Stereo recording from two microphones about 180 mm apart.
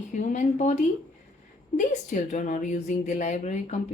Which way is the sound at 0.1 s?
45° left (ahead or behind).